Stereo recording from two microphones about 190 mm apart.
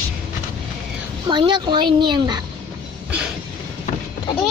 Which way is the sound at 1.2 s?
25° right (ahead or behind).